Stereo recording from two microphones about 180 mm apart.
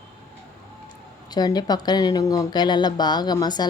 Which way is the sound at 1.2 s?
20° left (ahead or behind).